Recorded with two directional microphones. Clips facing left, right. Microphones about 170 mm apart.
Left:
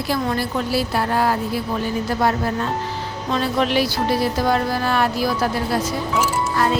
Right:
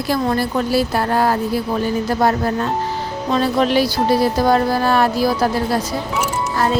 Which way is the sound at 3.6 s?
40° right (ahead or behind).